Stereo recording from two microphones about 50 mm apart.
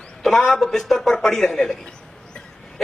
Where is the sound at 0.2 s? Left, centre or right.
Centre.